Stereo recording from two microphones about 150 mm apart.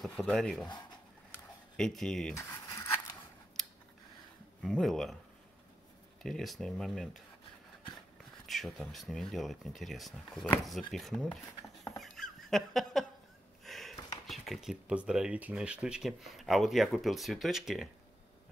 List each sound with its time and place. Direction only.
0.0 s speech: 5° left (ahead or behind)
1.8 s speech: 5° left (ahead or behind)
2.3 s a sound: 20° left (ahead or behind)
4.6 s speech: centre (ahead or behind)
6.2 s speech: centre (ahead or behind)
8.5 s speech: centre (ahead or behind)
12.0 s fowl: centre (ahead or behind)
13.7 s a sound: centre (ahead or behind)
14.2 s speech: centre (ahead or behind)